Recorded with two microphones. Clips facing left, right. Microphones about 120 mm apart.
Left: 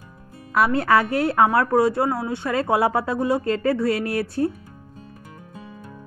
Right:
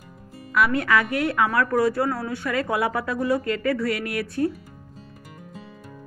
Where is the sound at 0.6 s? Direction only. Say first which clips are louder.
Left 3 dB; 30° left (ahead or behind).